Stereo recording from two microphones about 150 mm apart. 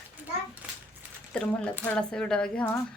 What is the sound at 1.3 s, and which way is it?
Speech, 5° left (ahead or behind).